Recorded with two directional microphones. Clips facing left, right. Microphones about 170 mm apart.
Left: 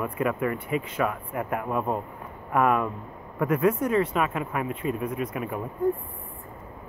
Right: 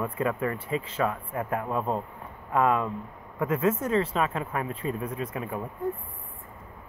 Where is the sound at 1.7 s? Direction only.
10° left (ahead or behind).